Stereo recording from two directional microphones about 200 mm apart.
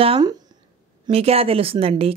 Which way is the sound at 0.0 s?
25° right (ahead or behind).